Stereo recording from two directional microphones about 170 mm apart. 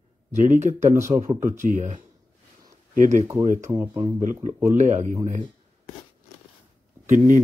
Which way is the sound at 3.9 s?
30° right (ahead or behind).